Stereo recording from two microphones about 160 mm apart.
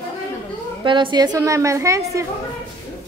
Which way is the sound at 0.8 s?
30° right (ahead or behind).